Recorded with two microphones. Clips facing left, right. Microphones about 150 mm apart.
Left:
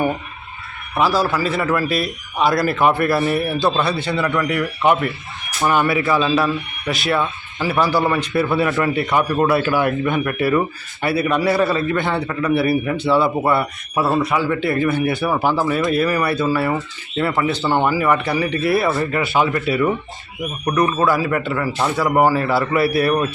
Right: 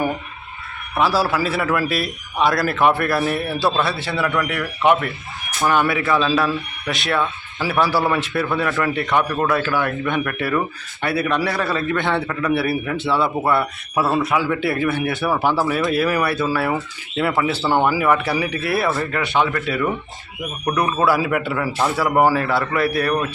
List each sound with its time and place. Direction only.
0.9 s a man's voice: 5° right (ahead or behind)
20.4 s a man's voice: 5° right (ahead or behind)